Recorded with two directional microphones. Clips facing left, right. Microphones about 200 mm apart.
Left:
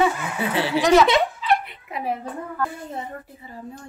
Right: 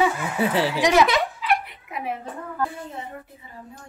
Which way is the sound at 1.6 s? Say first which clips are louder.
Left 2 dB; 30° left (ahead or behind).